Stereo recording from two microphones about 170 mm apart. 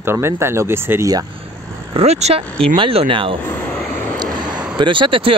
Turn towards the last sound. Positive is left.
turn(degrees=-30)  # may be behind; listen again after turning